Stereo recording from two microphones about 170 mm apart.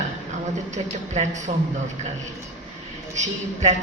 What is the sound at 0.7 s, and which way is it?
Speech, 45° right (ahead or behind).